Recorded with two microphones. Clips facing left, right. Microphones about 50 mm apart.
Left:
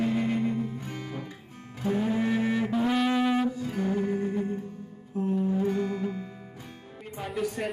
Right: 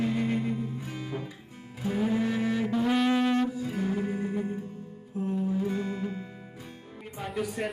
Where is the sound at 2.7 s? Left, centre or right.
Centre.